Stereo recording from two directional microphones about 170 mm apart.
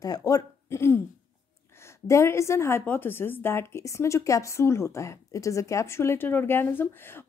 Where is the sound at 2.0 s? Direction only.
15° left (ahead or behind).